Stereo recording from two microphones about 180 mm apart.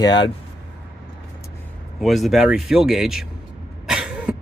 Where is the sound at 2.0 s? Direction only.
Centre (ahead or behind).